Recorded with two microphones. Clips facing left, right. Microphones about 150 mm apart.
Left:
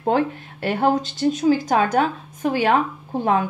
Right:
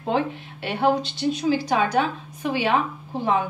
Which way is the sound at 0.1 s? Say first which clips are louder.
Left 3 dB; 45° left (ahead or behind).